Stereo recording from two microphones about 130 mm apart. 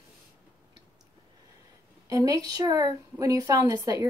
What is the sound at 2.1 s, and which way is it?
A woman's voice, 25° right (ahead or behind).